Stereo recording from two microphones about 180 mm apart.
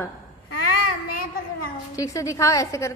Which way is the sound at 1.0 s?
55° left (ahead or behind).